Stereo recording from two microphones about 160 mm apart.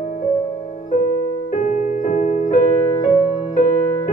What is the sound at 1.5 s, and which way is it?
Music, 50° left (ahead or behind).